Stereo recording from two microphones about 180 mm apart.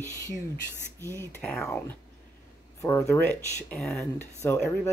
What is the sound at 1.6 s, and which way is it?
Speech, 15° left (ahead or behind).